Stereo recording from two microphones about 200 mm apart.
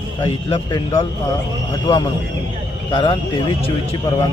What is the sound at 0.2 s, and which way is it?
Speech, 25° left (ahead or behind).